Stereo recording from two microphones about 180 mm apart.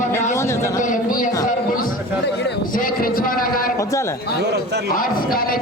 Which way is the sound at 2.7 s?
50° left (ahead or behind).